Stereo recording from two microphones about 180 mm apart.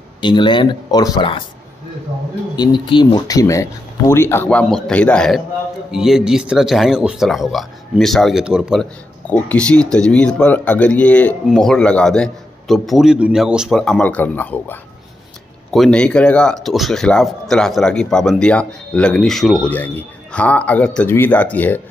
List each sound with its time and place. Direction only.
0.2 s speech: 25° left (ahead or behind)
2.5 s speech: 25° left (ahead or behind); by 8.8 s 5° right (ahead or behind)
9.3 s speech: 5° left (ahead or behind)